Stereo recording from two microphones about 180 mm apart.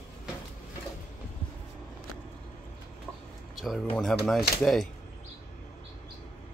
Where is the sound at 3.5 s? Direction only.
Centre (ahead or behind).